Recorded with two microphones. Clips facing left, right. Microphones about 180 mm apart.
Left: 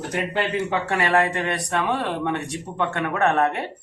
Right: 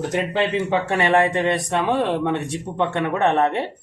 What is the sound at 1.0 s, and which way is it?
Speech, 25° right (ahead or behind).